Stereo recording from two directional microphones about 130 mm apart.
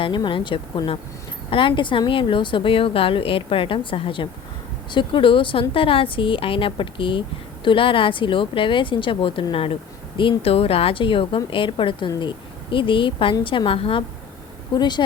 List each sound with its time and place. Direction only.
0.0 s a woman's voice: 40° left (ahead or behind)
14.8 s speech: 35° left (ahead or behind)